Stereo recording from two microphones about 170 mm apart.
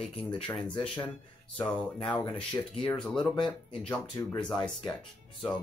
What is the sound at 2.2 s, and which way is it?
Speech, 30° left (ahead or behind).